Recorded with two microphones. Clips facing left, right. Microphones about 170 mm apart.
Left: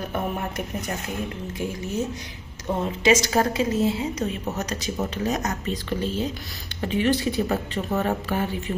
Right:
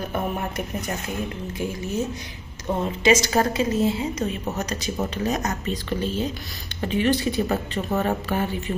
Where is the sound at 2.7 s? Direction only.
Centre (ahead or behind).